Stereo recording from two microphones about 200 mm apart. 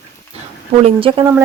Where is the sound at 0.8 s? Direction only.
25° right (ahead or behind).